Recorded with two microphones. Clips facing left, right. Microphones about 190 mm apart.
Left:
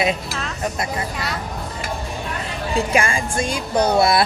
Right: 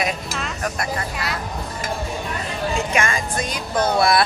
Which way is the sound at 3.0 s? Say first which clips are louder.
Left 2 dB; 30° left (ahead or behind).